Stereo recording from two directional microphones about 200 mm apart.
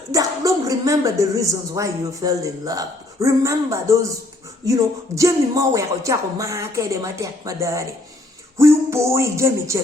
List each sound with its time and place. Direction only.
0.1 s a woman's voice: 15° right (ahead or behind)